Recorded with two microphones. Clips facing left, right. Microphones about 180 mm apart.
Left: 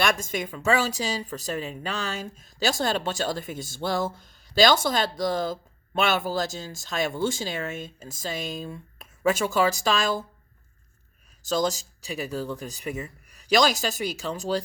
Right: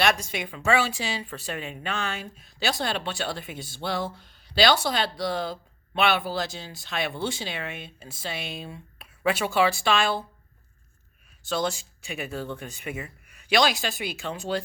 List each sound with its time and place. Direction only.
0.0 s speech: 45° left (ahead or behind)
11.4 s speech: 40° left (ahead or behind)